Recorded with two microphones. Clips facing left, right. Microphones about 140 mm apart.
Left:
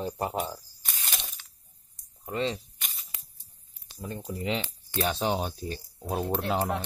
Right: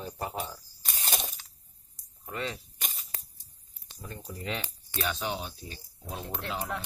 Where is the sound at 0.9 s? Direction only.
40° right (ahead or behind).